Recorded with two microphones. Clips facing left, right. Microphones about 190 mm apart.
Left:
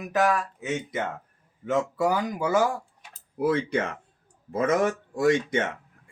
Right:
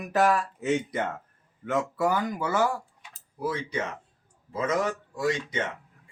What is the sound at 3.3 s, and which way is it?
Speech, 55° left (ahead or behind).